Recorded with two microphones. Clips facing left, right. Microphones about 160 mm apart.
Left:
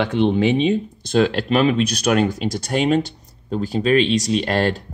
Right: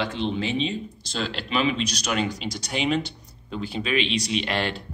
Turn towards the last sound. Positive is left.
turn(degrees=40)  # may be behind; listen again after turning